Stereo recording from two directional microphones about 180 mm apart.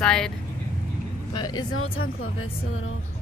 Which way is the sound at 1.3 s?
25° left (ahead or behind).